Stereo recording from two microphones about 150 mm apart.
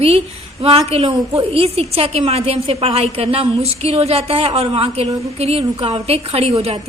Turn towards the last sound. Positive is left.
turn(degrees=-40)  # may be behind; listen again after turning